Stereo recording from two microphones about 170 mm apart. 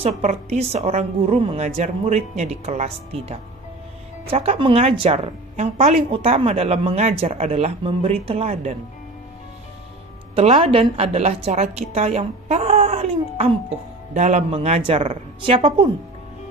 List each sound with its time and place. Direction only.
0.0 s a woman's voice: 40° right (ahead or behind)
10.3 s a woman's voice: 35° right (ahead or behind)